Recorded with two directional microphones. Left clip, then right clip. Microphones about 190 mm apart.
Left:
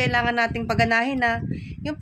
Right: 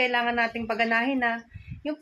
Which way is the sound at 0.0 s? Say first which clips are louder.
Left 2 dB; 45° left (ahead or behind).